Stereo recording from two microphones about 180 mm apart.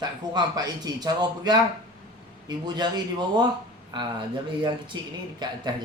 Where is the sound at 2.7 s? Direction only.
25° right (ahead or behind).